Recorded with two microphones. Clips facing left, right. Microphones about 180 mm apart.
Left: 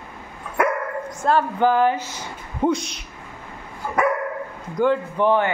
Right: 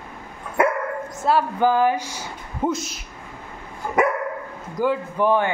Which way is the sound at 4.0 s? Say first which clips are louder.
Right 1 dB; 20° right (ahead or behind).